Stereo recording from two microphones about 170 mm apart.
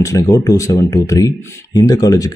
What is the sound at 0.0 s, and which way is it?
Speech, 20° left (ahead or behind).